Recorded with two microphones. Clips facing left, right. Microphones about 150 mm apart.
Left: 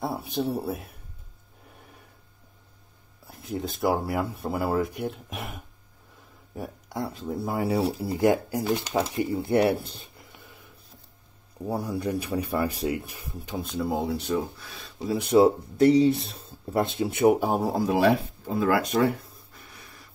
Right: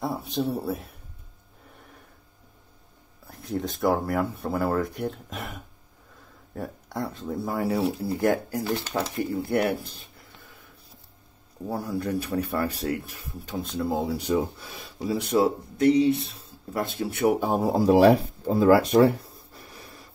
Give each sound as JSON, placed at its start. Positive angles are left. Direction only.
{"t": 0.0, "sound": "speech", "side_deg": 5}
{"t": 3.3, "sound": "speech", "side_deg": 5}
{"t": 6.5, "sound": "speech", "side_deg": 10}
{"t": 8.2, "sound": "speech", "side_deg": 15}
{"t": 11.6, "sound": "speech", "side_deg": 0}
{"t": 12.0, "sound": "speech", "side_deg": 15}
{"t": 14.1, "sound": "speech", "side_deg": -15}
{"t": 15.3, "sound": "speech", "side_deg": 30}
{"t": 16.7, "sound": "speech", "side_deg": 20}
{"t": 17.4, "sound": "speech", "side_deg": 0}
{"t": 17.7, "sound": "speech", "side_deg": -35}